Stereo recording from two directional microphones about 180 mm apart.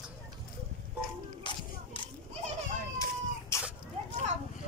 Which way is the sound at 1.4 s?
25° left (ahead or behind).